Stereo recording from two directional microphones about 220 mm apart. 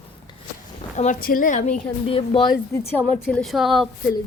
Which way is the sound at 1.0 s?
35° left (ahead or behind).